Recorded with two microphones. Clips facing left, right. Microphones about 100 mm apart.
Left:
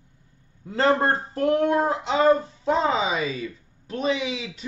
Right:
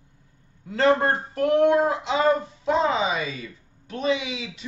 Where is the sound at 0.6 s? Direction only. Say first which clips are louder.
Right 1 dB; 30° left (ahead or behind).